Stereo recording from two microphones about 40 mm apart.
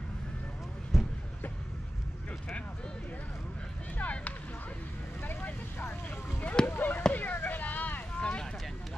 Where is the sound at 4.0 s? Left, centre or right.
Left.